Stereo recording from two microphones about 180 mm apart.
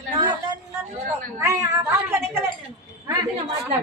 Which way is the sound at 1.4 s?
15° right (ahead or behind).